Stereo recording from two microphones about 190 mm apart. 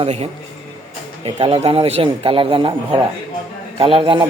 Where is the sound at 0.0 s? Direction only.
35° right (ahead or behind).